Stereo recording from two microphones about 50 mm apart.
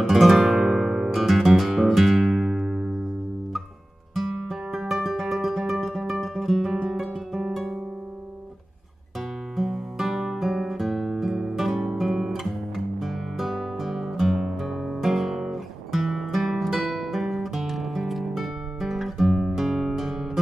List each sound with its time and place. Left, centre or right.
0.1 s music: centre
4.1 s music: centre
9.6 s music: centre